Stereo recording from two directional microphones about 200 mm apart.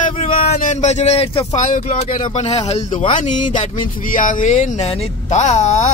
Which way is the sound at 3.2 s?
40° left (ahead or behind).